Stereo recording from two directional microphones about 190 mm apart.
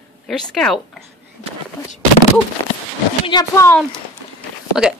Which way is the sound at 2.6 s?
20° left (ahead or behind).